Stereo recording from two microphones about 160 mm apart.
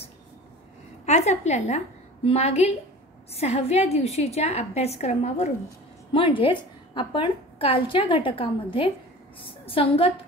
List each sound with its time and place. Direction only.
1.0 s a woman's voice: 45° left (ahead or behind)